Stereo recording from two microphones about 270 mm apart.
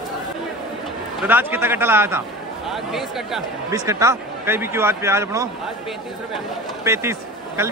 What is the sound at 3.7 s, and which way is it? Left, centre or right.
A man's voice, centre.